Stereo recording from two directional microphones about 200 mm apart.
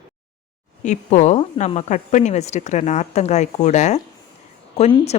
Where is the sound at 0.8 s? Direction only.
35° left (ahead or behind).